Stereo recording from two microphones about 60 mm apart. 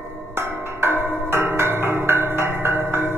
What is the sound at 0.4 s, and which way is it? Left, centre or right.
Tubular bells, right.